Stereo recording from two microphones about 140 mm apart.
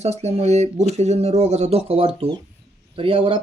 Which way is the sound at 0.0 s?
50° right (ahead or behind).